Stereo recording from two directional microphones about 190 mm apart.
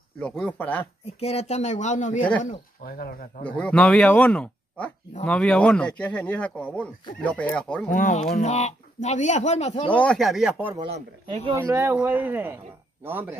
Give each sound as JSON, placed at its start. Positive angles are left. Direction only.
{"t": 0.2, "sound": "speech", "side_deg": 5}
{"t": 1.2, "sound": "speech", "side_deg": 35}
{"t": 2.8, "sound": "speech", "side_deg": 50}
{"t": 3.4, "sound": "speech", "side_deg": 5}
{"t": 7.9, "sound": "speech", "side_deg": 40}
{"t": 9.9, "sound": "speech", "side_deg": 5}
{"t": 10.9, "sound": "speech", "side_deg": -25}
{"t": 11.5, "sound": "speech", "side_deg": -15}